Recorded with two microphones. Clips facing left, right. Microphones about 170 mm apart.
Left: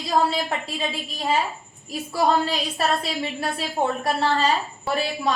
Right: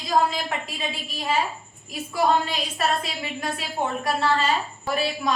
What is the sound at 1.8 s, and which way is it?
A woman's voice, 35° left (ahead or behind).